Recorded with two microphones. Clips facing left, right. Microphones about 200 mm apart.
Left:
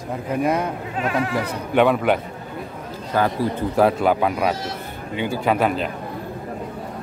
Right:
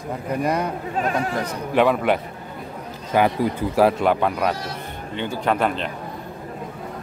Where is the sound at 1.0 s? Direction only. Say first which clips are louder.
Left 1 dB; 40° right (ahead or behind).